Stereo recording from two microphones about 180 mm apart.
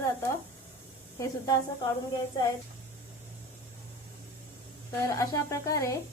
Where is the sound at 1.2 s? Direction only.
20° left (ahead or behind).